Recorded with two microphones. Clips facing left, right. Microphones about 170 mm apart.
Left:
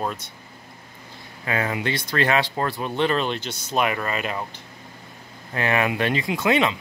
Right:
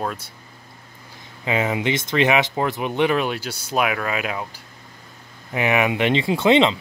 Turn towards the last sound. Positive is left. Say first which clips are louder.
# right 5 dB
turn(degrees=-25)  # may be behind; listen again after turning